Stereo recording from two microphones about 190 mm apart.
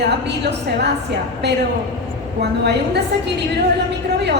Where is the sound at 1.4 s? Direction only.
60° right (ahead or behind).